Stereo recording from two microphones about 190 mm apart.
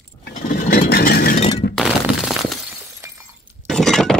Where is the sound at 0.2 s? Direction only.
50° left (ahead or behind).